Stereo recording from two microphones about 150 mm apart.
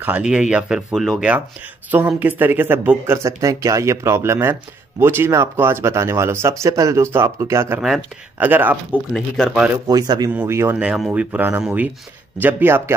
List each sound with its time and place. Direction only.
0.0 s speech: 10° right (ahead or behind)
7.8 s speech: 5° right (ahead or behind)
8.5 s speech: 15° right (ahead or behind)
9.1 s speech: 5° right (ahead or behind)
9.8 s speech: 25° right (ahead or behind)